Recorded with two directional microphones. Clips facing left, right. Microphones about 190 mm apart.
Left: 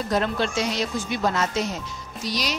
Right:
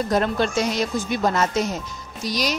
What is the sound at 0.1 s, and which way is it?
Speech, 45° right (ahead or behind).